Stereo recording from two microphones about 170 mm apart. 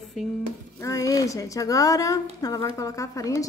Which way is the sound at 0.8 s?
20° left (ahead or behind).